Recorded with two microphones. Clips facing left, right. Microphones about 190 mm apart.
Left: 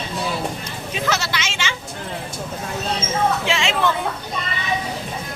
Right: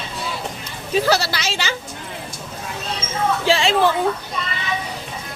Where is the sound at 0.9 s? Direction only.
35° right (ahead or behind).